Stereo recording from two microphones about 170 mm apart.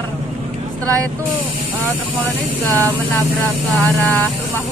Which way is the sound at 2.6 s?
10° left (ahead or behind).